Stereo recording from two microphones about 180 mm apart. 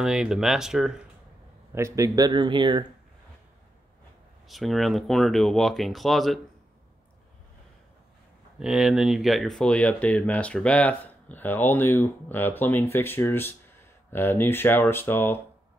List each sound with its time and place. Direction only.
0.0 s speech: 5° right (ahead or behind)
1.8 s speech: 15° right (ahead or behind)
4.5 s speech: centre (ahead or behind)
8.5 s speech: 5° right (ahead or behind)